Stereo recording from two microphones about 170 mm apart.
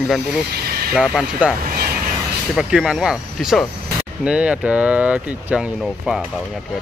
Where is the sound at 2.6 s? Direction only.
5° right (ahead or behind).